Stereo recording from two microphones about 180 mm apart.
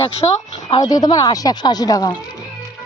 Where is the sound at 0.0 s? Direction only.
35° left (ahead or behind).